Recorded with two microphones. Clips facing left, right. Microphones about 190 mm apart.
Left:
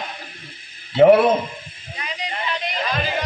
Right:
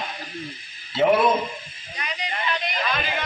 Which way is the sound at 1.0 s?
65° left (ahead or behind).